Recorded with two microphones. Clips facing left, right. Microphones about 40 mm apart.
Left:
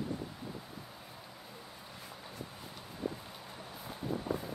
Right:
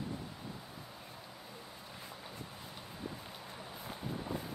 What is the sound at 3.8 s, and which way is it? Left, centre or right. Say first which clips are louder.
Vehicle: left 5 dB; centre.